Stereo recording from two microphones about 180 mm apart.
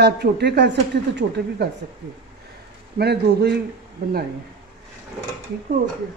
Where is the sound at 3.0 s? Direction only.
65° right (ahead or behind).